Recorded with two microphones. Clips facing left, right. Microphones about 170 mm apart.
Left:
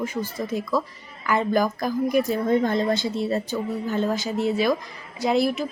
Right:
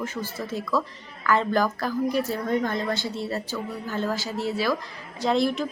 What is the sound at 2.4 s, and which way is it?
Speech, 30° left (ahead or behind).